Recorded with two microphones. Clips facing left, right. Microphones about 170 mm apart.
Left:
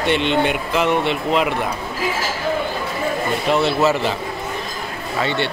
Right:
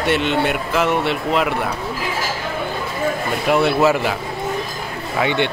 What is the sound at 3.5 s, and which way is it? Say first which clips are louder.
Speech: right 2 dB; 10° right (ahead or behind).